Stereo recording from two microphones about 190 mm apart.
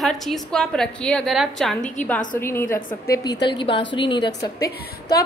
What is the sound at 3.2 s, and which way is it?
A woman's voice, 20° left (ahead or behind).